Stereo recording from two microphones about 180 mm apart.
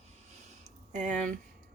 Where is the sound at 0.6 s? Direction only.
45° right (ahead or behind).